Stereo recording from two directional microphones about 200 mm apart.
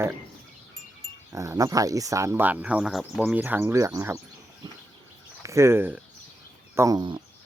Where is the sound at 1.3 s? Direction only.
15° right (ahead or behind).